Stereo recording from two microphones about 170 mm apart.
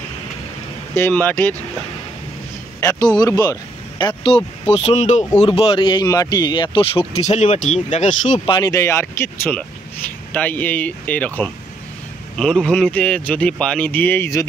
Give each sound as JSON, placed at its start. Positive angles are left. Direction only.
{"t": 0.9, "sound": "speech", "side_deg": 10}
{"t": 2.8, "sound": "a man's voice", "side_deg": 20}
{"t": 8.5, "sound": "speech", "side_deg": 20}